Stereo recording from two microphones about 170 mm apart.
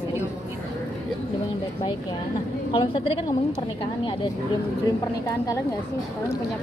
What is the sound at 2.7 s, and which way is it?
Speech, 30° left (ahead or behind).